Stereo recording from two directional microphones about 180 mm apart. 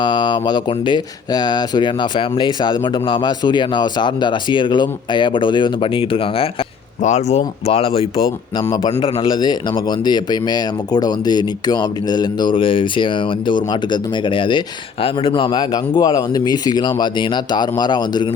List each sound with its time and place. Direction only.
0.0 s speech: 25° left (ahead or behind)
8.6 s speech: 20° left (ahead or behind)